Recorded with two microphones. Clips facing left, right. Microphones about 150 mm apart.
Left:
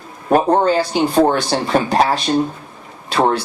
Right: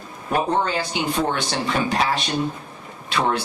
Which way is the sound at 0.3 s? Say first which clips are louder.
Left 8 dB; 45° left (ahead or behind).